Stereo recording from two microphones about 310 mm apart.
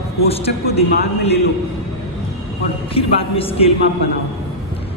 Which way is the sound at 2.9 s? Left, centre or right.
Centre.